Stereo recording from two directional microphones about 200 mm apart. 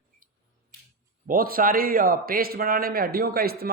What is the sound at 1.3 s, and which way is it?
A man's voice, 45° right (ahead or behind).